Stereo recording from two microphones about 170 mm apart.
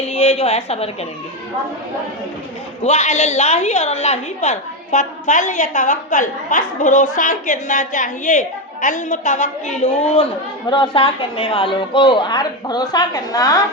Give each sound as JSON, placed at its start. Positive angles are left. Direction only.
{"t": 0.1, "sound": "a woman's voice", "side_deg": 40}
{"t": 2.8, "sound": "a woman's voice", "side_deg": 45}